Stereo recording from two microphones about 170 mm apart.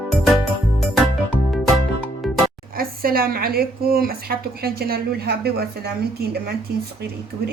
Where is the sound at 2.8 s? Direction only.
60° right (ahead or behind).